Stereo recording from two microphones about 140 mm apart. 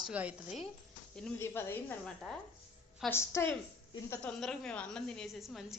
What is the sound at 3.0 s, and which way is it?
Speech, 20° left (ahead or behind).